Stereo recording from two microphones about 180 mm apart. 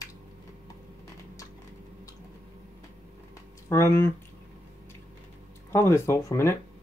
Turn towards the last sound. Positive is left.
turn(degrees=15)  # may be behind; listen again after turning